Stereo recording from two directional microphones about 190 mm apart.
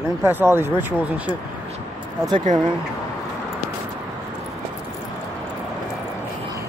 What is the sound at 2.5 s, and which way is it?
Speech, 40° right (ahead or behind).